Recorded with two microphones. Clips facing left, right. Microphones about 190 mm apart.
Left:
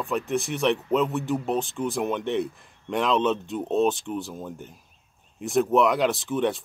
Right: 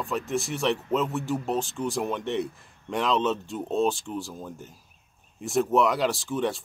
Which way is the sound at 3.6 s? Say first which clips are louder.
Left 2 dB; 20° left (ahead or behind).